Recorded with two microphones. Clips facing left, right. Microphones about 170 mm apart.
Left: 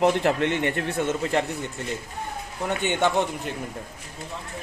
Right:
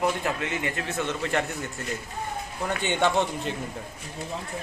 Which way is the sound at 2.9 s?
15° left (ahead or behind).